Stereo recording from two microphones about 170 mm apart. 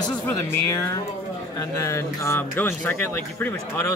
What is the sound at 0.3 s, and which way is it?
Speech, 15° left (ahead or behind).